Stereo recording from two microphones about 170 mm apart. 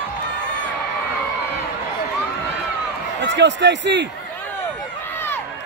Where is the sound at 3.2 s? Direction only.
90° right.